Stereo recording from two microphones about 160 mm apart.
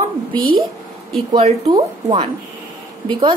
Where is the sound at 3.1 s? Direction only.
30° right (ahead or behind).